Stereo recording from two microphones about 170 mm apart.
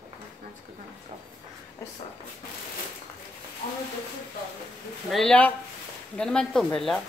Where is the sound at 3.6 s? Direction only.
55° left (ahead or behind).